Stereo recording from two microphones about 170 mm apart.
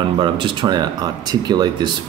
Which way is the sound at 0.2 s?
30° right (ahead or behind).